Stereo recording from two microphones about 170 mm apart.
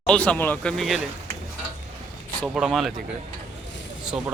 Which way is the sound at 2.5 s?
Centre (ahead or behind).